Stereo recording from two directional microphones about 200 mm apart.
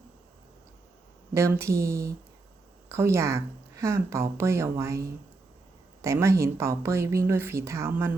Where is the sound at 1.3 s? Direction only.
15° right (ahead or behind).